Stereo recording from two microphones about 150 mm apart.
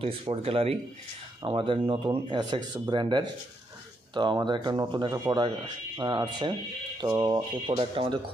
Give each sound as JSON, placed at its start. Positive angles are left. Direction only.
{"t": 0.0, "sound": "speech", "side_deg": -40}